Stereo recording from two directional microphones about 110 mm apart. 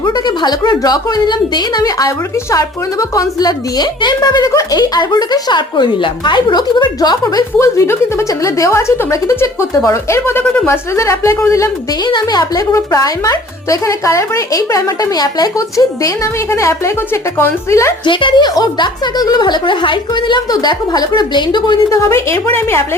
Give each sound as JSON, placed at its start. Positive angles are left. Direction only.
{"t": 0.0, "sound": "a woman's voice", "side_deg": 40}
{"t": 12.0, "sound": "a child's voice", "side_deg": 40}
{"t": 18.0, "sound": "a woman's voice", "side_deg": 50}
{"t": 21.8, "sound": "a child's voice", "side_deg": 25}